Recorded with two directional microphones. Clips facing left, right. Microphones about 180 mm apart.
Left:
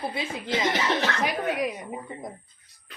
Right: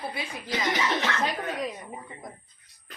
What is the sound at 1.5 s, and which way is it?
Speech, 10° left (ahead or behind).